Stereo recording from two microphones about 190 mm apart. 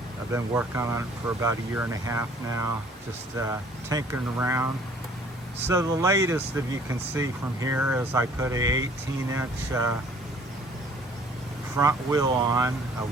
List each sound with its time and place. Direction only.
0.3 s speech: 10° right (ahead or behind)
11.8 s speech: 15° right (ahead or behind)